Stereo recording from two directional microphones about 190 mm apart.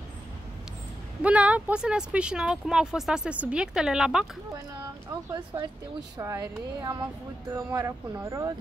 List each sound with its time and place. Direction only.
1.2 s speech: 5° right (ahead or behind)
5.3 s speech: 20° right (ahead or behind)